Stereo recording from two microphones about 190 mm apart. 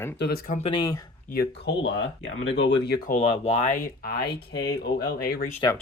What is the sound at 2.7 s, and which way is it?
Speech, 55° left (ahead or behind).